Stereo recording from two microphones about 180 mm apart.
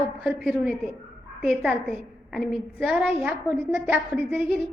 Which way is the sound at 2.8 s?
10° right (ahead or behind).